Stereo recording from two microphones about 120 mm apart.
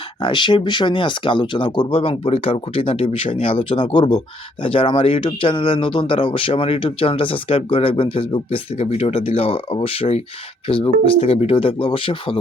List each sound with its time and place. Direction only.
0.2 s speech: 40° left (ahead or behind)